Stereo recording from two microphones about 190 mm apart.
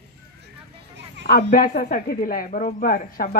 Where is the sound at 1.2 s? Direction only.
50° left (ahead or behind).